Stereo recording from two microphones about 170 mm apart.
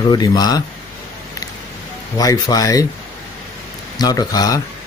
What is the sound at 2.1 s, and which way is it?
Speech, 20° left (ahead or behind).